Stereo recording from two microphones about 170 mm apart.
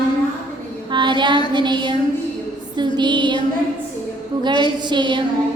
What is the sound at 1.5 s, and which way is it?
A woman's voice, 25° right (ahead or behind).